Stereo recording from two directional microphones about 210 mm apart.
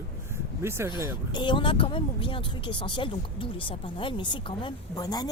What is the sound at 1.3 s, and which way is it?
Speech, 20° left (ahead or behind).